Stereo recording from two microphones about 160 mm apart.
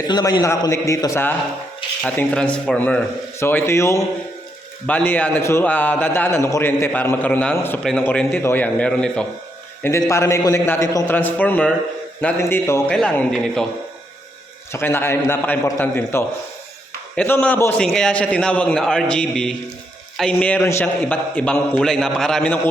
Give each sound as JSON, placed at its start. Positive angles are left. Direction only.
{"t": 0.1, "sound": "a man's voice", "side_deg": 25}
{"t": 10.1, "sound": "a man's voice", "side_deg": 15}
{"t": 14.7, "sound": "a man's voice", "side_deg": 15}